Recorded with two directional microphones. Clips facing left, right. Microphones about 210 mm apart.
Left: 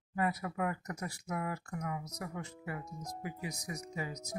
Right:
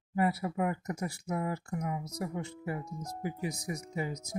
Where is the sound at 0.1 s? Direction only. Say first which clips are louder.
Right 5 dB; 30° right (ahead or behind).